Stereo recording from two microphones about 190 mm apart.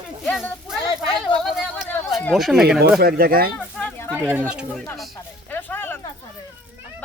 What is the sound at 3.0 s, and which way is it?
Speech, 55° right (ahead or behind).